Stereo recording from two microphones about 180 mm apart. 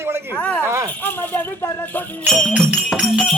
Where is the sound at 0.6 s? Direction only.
15° right (ahead or behind).